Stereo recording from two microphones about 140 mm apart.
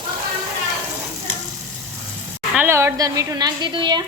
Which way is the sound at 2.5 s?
15° right (ahead or behind).